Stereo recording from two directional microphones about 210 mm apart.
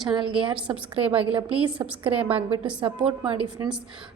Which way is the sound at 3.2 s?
20° right (ahead or behind).